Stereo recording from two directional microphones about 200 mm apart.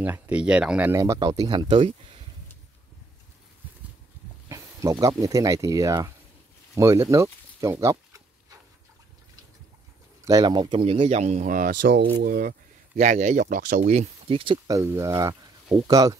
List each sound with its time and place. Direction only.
0.0 s speech: 10° right (ahead or behind); by 2.0 s 30° right (ahead or behind)
4.5 s speech: 15° right (ahead or behind)
10.2 s speech: 20° right (ahead or behind); by 12.5 s 50° right (ahead or behind)
12.9 s speech: 35° right (ahead or behind)
14.8 s speech: 15° right (ahead or behind)